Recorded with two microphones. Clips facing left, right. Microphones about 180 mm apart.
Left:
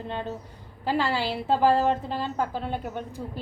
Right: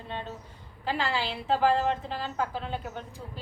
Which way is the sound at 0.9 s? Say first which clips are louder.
Left 4 dB; 40° left (ahead or behind).